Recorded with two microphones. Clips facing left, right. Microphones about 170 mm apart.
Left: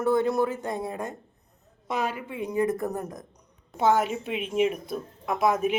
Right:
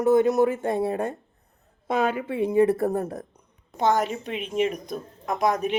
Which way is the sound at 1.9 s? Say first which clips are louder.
Right 5 dB; 55° right (ahead or behind).